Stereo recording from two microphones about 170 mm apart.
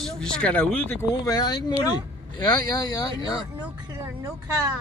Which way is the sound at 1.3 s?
25° left (ahead or behind).